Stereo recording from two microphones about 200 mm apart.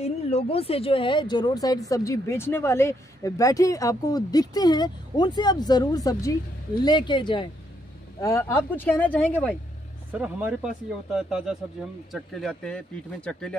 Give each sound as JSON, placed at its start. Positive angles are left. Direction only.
{"t": 0.0, "sound": "speech", "side_deg": 30}
{"t": 10.1, "sound": "speech", "side_deg": -5}